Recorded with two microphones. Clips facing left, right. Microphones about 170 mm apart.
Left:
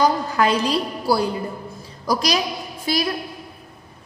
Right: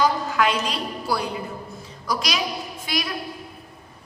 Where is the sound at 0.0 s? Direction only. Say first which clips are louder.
Left 2 dB; 35° left (ahead or behind).